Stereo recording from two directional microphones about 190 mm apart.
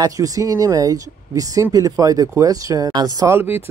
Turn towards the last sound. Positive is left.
turn(degrees=-10)  # may be behind; listen again after turning